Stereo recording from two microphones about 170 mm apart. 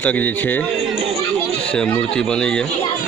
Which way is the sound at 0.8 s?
35° right (ahead or behind).